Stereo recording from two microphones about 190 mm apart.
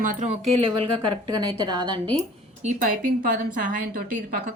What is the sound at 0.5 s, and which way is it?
A woman's voice, 30° right (ahead or behind).